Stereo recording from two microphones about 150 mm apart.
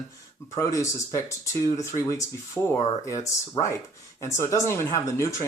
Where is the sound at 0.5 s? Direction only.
20° left (ahead or behind).